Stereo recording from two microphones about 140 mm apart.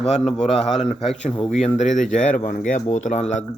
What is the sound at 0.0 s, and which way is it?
A man's voice, 50° left (ahead or behind).